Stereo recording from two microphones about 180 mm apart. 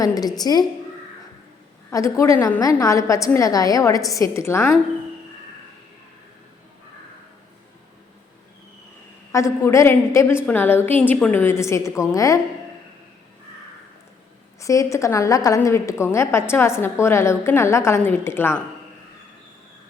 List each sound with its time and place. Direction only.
0.0 s a woman's voice: 20° left (ahead or behind)
1.9 s a woman's voice: 15° left (ahead or behind)
9.3 s a woman's voice: 15° left (ahead or behind)
14.6 s a woman's voice: 15° left (ahead or behind)